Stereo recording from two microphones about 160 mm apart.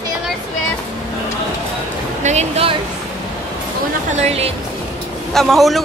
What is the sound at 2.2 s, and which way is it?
Speech, 40° right (ahead or behind).